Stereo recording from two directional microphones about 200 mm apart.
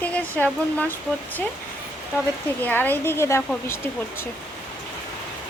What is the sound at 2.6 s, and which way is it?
Speech, 10° left (ahead or behind).